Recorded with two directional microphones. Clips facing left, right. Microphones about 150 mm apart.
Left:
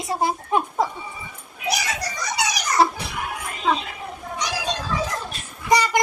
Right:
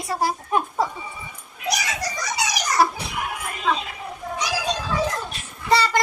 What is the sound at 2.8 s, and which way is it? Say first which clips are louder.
Speech: left 1 dB; 25° left (ahead or behind).